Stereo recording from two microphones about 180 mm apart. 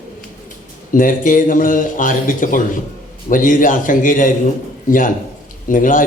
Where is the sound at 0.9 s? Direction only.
50° left (ahead or behind).